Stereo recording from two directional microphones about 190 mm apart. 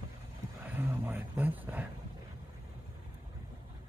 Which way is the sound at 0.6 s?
10° right (ahead or behind).